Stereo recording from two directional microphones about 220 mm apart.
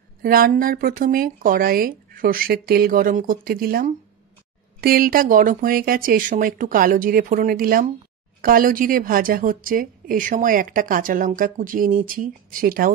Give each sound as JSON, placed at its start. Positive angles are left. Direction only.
{"t": 0.2, "sound": "a woman's voice", "side_deg": -40}